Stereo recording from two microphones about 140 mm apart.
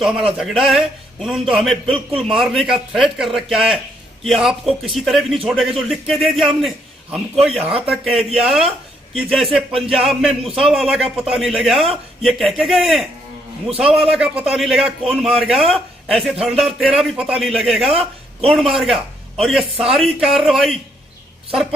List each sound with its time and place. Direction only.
0.0 s a man's voice: 5° right (ahead or behind)